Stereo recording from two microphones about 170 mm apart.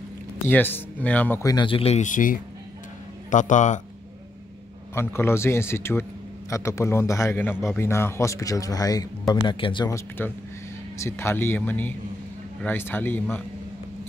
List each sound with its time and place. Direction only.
0.5 s a man's voice: 10° left (ahead or behind)
1.4 s speech: 25° left (ahead or behind); by 3.8 s 45° left (ahead or behind)
4.9 s a man's voice: 15° left (ahead or behind)
9.8 s a man's voice: 15° left (ahead or behind)